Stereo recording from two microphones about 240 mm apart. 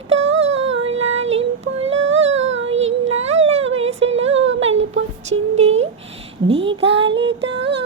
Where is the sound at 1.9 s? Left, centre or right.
Right.